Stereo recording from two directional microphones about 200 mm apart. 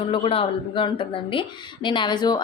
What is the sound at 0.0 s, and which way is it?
Speech, 25° left (ahead or behind).